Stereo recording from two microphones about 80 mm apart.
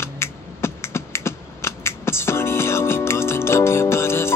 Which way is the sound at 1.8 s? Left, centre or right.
Left.